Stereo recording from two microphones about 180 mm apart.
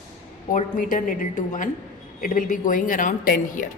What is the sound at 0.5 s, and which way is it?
Speech, 45° left (ahead or behind).